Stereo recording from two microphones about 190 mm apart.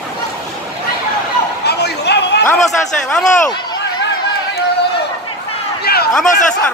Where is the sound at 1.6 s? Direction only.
60° left (ahead or behind).